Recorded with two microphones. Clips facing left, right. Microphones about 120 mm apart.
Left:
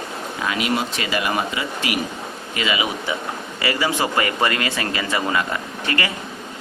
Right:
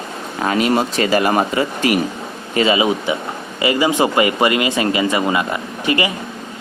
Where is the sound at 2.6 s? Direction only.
30° right (ahead or behind).